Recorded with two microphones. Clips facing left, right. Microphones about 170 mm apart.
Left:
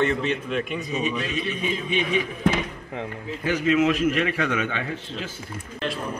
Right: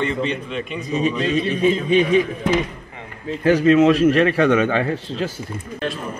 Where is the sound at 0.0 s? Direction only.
5° left (ahead or behind).